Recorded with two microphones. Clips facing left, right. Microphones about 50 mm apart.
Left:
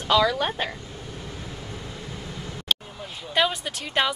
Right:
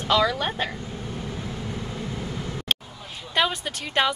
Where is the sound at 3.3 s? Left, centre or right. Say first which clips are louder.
Even; centre.